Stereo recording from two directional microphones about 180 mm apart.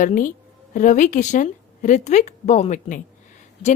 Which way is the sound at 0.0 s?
50° left (ahead or behind).